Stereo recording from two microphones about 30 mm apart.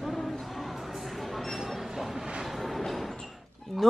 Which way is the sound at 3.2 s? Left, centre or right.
Centre.